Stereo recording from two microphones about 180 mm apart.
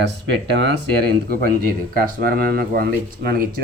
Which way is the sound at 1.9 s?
55° right (ahead or behind).